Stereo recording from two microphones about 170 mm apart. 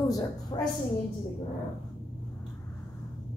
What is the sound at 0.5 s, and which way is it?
Speech, 25° left (ahead or behind).